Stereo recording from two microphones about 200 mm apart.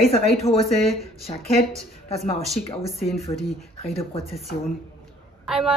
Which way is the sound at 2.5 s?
Centre (ahead or behind).